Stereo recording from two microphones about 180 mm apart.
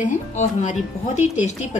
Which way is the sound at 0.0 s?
40° left (ahead or behind).